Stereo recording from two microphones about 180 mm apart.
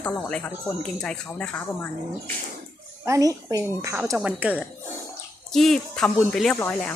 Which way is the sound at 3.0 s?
20° right (ahead or behind).